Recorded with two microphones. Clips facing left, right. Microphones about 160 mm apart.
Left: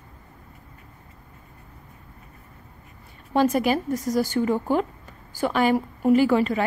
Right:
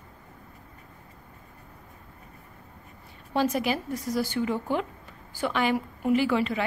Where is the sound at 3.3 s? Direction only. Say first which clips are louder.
Left 5 dB; 50° left (ahead or behind).